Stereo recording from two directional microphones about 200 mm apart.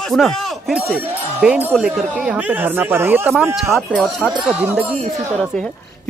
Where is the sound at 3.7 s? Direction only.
Centre (ahead or behind).